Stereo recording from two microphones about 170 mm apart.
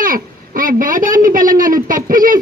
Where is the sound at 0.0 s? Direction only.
55° right (ahead or behind).